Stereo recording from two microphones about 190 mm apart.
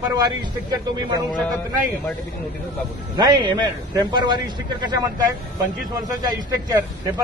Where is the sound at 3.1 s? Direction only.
20° right (ahead or behind).